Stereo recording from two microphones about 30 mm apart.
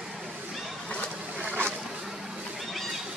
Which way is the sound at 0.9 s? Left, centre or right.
Left.